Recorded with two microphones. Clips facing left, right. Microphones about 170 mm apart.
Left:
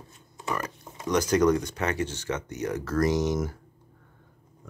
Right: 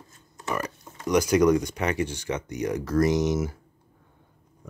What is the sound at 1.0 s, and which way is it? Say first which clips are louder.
Speech: right 2 dB; 10° right (ahead or behind).